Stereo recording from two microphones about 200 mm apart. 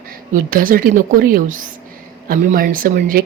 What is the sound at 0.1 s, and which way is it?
Speech, 45° right (ahead or behind).